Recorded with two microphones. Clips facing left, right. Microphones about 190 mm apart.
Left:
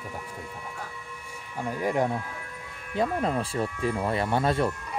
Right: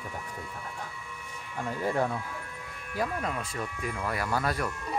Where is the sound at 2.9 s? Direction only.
30° left (ahead or behind).